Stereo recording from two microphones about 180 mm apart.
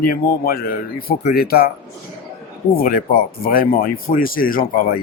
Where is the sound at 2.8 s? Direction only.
55° left (ahead or behind).